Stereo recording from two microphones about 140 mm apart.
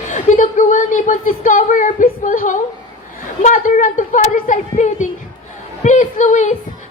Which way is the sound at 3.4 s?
70° left (ahead or behind).